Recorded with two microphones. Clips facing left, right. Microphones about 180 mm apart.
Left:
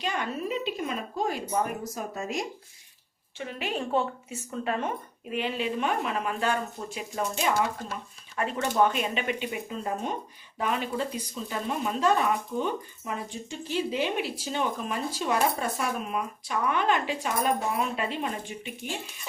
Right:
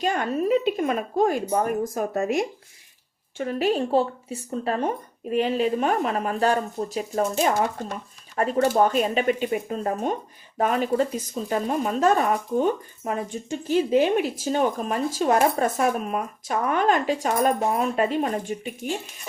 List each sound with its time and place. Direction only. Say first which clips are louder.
0.0 s speech: right 7 dB; 45° right (ahead or behind)
3.3 s speech: right 9 dB; 40° right (ahead or behind)